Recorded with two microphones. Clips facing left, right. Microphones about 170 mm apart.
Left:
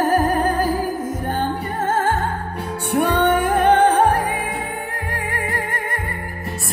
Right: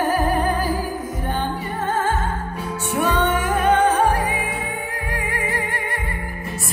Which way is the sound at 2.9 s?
55° left (ahead or behind).